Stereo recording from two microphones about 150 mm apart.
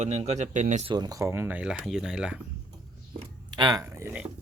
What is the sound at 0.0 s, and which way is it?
Speech, 45° right (ahead or behind).